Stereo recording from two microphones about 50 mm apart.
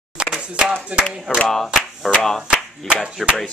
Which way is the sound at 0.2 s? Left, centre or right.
Right.